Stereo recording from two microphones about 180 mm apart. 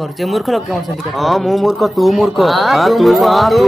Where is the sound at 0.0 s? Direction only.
Centre (ahead or behind).